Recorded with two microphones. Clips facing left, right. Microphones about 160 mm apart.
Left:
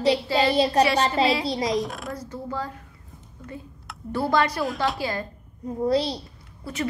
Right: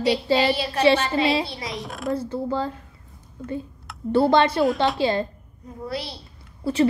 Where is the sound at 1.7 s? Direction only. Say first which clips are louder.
Left 6 dB; centre (ahead or behind).